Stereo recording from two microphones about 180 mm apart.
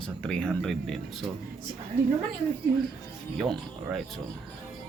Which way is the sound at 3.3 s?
Centre (ahead or behind).